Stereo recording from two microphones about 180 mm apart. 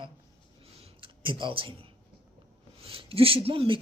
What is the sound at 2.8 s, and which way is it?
Speech, 30° right (ahead or behind).